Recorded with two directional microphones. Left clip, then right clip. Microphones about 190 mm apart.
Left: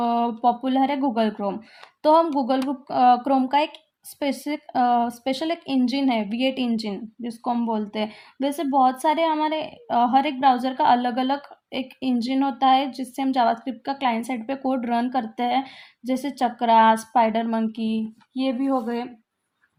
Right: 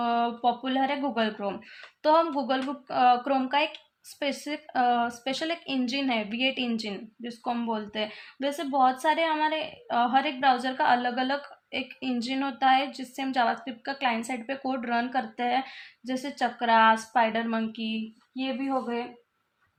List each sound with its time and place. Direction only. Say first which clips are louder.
0.0 s a woman's voice: left 4 dB; 50° left (ahead or behind)